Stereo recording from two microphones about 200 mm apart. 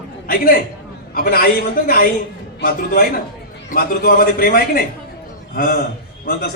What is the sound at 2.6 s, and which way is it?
A man's voice, 45° left (ahead or behind).